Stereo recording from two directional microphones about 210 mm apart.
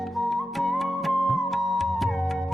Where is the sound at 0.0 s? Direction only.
Centre (ahead or behind).